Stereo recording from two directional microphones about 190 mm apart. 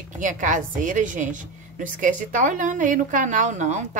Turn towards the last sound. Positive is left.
turn(degrees=-40)  # may be behind; listen again after turning